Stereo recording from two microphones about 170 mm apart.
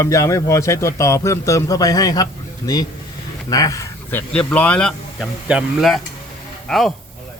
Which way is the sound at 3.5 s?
20° left (ahead or behind).